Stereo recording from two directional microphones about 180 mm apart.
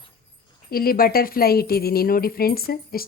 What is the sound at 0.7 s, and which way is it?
Speech, 55° left (ahead or behind).